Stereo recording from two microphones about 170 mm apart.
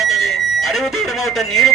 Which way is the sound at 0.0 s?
Centre (ahead or behind).